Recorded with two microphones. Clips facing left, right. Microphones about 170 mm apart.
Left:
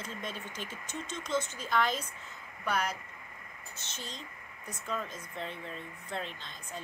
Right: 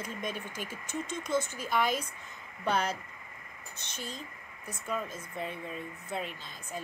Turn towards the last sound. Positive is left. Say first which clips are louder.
# right 2 dB
turn(degrees=-10)  # may be behind; listen again after turning